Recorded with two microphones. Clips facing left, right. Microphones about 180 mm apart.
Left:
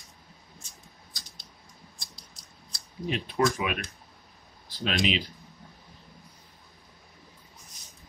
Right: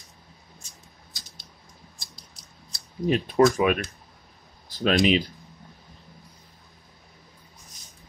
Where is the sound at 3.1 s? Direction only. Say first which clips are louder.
Right 7 dB; 45° right (ahead or behind).